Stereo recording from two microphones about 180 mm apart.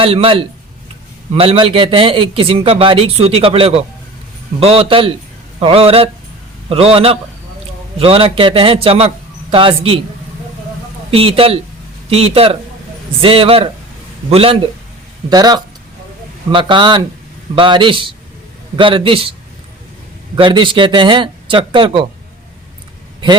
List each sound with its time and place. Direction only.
0.0 s speech: 30° right (ahead or behind)
11.1 s speech: 30° right (ahead or behind)
15.3 s speech: 20° right (ahead or behind)
20.3 s speech: 25° right (ahead or behind)